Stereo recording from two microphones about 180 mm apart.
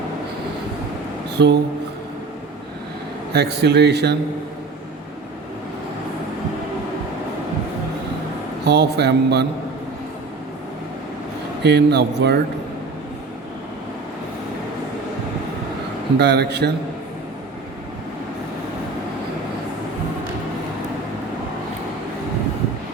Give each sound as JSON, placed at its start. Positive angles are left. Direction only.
{"t": 1.4, "sound": "a man's voice", "side_deg": -70}
{"t": 3.3, "sound": "a man's voice", "side_deg": -65}
{"t": 8.6, "sound": "a man's voice", "side_deg": -70}
{"t": 11.6, "sound": "a man's voice", "side_deg": -70}
{"t": 16.1, "sound": "a man's voice", "side_deg": -70}